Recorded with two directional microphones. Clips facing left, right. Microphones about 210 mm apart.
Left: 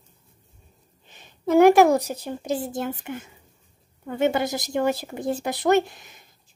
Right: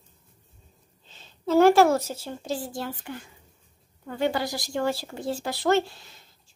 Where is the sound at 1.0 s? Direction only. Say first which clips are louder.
Left 3 dB; 15° left (ahead or behind).